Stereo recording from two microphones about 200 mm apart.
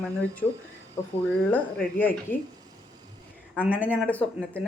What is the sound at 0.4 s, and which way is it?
Speech, 5° left (ahead or behind).